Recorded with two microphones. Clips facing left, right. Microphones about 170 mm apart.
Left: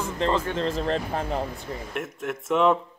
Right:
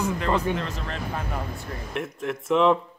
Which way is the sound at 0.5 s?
30° left (ahead or behind).